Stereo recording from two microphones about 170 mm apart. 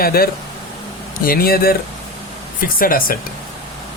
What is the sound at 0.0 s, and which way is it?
Speech, 60° left (ahead or behind).